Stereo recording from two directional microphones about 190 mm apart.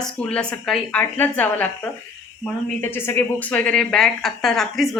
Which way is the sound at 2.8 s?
10° left (ahead or behind).